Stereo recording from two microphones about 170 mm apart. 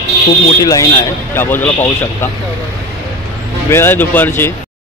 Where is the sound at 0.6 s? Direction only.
20° left (ahead or behind).